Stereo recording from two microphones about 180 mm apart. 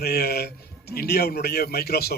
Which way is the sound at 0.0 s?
60° left (ahead or behind).